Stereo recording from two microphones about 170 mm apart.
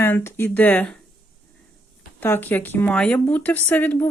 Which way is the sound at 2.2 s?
10° left (ahead or behind).